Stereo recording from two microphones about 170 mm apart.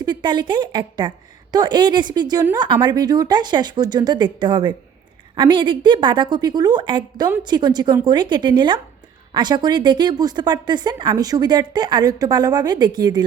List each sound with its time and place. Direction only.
0.0 s a woman's voice: 25° right (ahead or behind)